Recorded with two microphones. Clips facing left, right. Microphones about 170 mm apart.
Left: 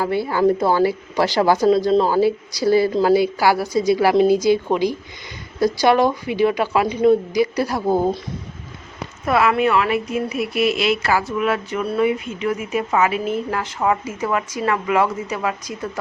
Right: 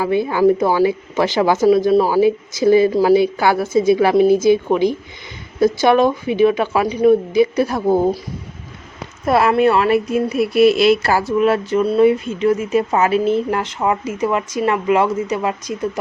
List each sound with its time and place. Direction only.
0.0 s a woman's voice: 20° right (ahead or behind)
5.5 s speech: 20° right (ahead or behind)
9.2 s speech: 35° right (ahead or behind); by 15.7 s 20° right (ahead or behind)